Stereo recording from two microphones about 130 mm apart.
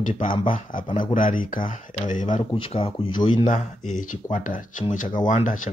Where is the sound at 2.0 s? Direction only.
75° left (ahead or behind).